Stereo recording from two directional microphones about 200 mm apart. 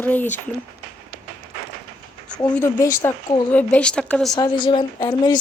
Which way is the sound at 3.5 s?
5° left (ahead or behind).